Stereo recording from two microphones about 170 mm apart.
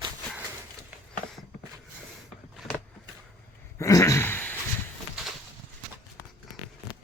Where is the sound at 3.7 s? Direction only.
20° left (ahead or behind).